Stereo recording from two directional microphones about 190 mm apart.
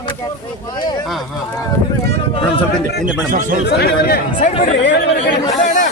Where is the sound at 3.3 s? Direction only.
45° right (ahead or behind).